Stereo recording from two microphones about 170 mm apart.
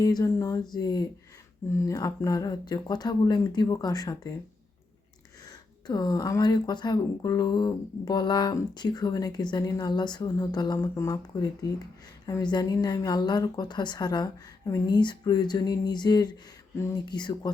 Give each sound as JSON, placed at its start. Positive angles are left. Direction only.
{"t": 0.0, "sound": "speech", "side_deg": 20}
{"t": 5.5, "sound": "speech", "side_deg": 25}